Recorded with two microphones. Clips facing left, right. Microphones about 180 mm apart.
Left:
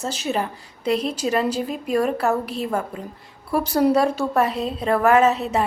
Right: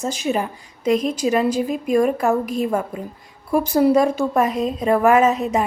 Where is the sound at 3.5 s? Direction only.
10° right (ahead or behind).